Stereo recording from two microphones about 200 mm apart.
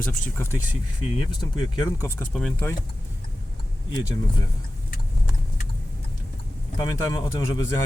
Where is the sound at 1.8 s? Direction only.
15° left (ahead or behind).